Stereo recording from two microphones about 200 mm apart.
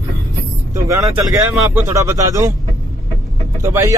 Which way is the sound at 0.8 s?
15° right (ahead or behind).